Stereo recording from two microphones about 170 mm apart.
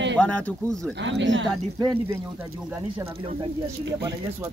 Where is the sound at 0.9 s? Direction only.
90° right.